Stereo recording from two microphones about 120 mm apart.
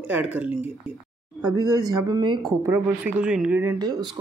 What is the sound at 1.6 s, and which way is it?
Speech, 30° right (ahead or behind).